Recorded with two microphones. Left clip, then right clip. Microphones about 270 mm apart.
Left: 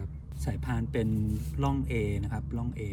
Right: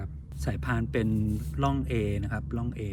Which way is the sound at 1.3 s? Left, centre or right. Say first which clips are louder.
Right 2 dB; centre.